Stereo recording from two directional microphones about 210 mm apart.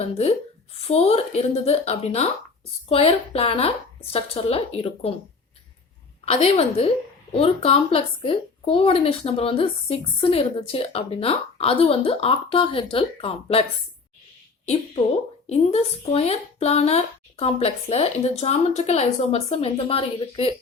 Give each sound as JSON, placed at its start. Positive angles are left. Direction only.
{"t": 0.0, "sound": "speech", "side_deg": 30}
{"t": 6.2, "sound": "speech", "side_deg": 30}
{"t": 15.4, "sound": "speech", "side_deg": 30}